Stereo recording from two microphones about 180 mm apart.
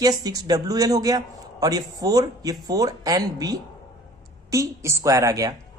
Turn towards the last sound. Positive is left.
turn(degrees=-20)  # may be behind; listen again after turning